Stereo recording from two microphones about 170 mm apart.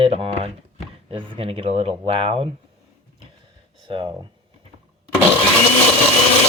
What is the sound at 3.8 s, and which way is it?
Speech, 30° right (ahead or behind).